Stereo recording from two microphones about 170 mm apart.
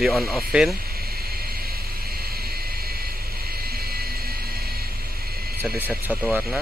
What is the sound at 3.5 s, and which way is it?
Vehicle, 65° right (ahead or behind).